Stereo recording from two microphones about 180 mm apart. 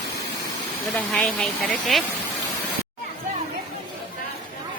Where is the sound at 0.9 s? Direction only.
5° left (ahead or behind).